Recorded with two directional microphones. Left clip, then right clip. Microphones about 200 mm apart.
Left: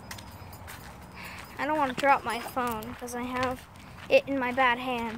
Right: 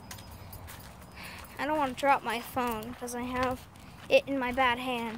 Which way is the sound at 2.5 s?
35° right (ahead or behind).